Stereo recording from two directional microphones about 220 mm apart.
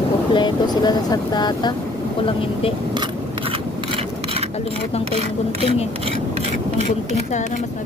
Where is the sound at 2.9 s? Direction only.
25° right (ahead or behind).